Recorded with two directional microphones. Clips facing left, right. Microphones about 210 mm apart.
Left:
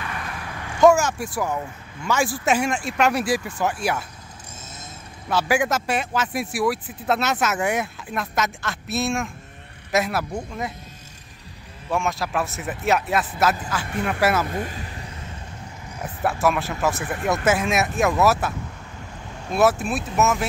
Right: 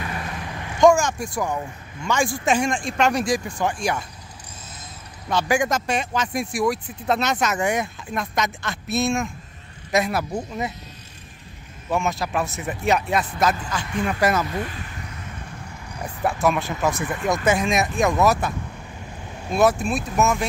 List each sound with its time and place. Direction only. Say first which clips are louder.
0.0 s a sound: right 2 dB; 25° right (ahead or behind)
0.7 s speech: even; 5° left (ahead or behind)
5.3 s speech: even; 5° left (ahead or behind)
11.9 s speech: right 1 dB; centre (ahead or behind)
14.5 s vehicle: even; 40° left (ahead or behind)
16.0 s speech: even; 5° left (ahead or behind)
19.5 s speech: even; 5° left (ahead or behind)